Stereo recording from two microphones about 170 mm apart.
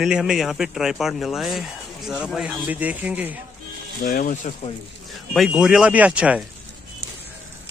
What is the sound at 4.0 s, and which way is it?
Speech, 55° left (ahead or behind).